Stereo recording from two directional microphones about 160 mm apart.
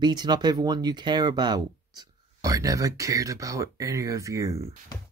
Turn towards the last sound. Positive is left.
turn(degrees=-20)  # may be behind; listen again after turning